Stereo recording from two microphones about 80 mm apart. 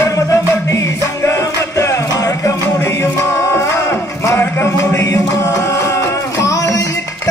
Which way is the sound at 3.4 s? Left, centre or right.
Left.